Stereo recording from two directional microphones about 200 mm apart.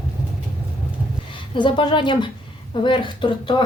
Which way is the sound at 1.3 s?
25° left (ahead or behind).